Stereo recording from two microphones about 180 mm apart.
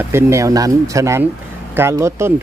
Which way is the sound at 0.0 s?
15° right (ahead or behind).